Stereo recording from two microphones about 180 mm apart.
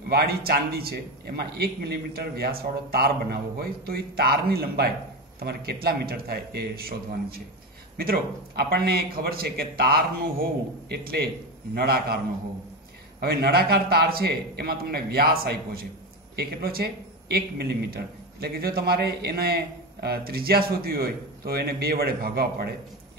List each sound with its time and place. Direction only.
0.1 s a man's voice: 60° right (ahead or behind)
13.2 s a man's voice: 60° right (ahead or behind)